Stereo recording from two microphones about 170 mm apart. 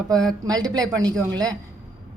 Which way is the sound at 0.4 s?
25° right (ahead or behind).